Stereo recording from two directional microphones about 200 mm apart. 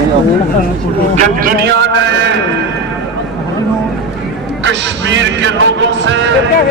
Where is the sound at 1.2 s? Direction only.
45° right (ahead or behind).